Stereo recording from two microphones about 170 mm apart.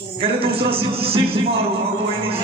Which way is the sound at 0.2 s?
35° right (ahead or behind).